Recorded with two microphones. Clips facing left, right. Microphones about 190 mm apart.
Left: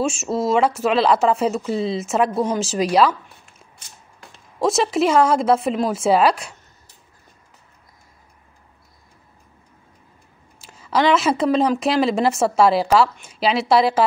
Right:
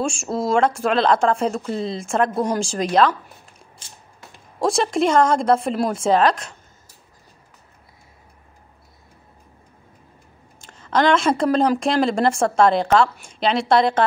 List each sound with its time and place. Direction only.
0.0 s a woman's voice: 5° left (ahead or behind)
3.8 s a sound: 30° right (ahead or behind)
4.6 s a woman's voice: 5° left (ahead or behind)
10.6 s a woman's voice: 5° left (ahead or behind)